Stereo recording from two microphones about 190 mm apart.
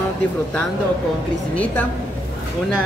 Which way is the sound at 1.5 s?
5° left (ahead or behind).